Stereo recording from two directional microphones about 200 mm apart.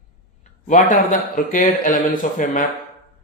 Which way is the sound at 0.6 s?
40° left (ahead or behind).